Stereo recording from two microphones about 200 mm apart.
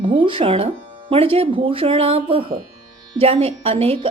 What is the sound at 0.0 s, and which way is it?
A woman's voice, 25° right (ahead or behind).